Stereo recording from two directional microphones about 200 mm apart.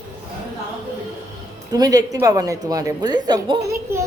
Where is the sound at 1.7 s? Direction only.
20° right (ahead or behind).